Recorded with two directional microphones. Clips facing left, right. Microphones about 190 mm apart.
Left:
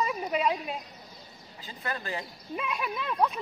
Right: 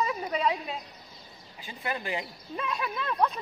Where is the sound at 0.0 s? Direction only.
10° left (ahead or behind).